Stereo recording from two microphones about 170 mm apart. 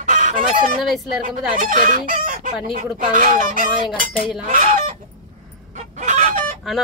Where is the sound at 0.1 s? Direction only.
50° right (ahead or behind).